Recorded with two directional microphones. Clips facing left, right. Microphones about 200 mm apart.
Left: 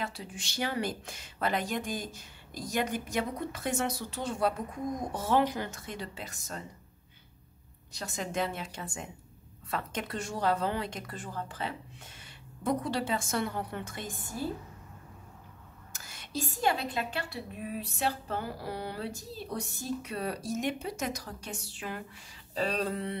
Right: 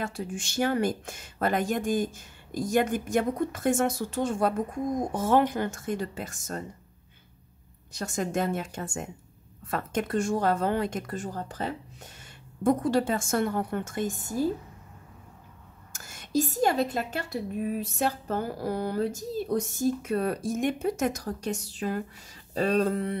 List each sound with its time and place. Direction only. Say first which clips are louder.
0.0 s a woman's voice: right 6 dB; 50° right (ahead or behind)
7.9 s a woman's voice: right 6 dB; 45° right (ahead or behind)
15.9 s a woman's voice: right 10 dB; 50° right (ahead or behind)